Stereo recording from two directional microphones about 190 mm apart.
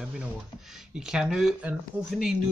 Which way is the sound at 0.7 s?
5° right (ahead or behind).